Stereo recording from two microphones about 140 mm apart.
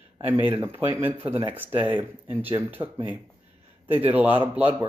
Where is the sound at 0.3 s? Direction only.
15° right (ahead or behind).